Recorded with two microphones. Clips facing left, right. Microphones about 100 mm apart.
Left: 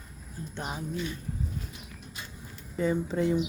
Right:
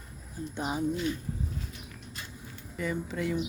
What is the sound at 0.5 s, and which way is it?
Speech, 10° right (ahead or behind).